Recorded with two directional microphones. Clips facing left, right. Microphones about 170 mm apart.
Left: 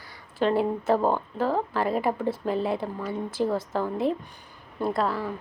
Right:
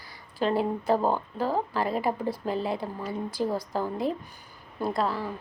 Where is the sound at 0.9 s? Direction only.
5° right (ahead or behind).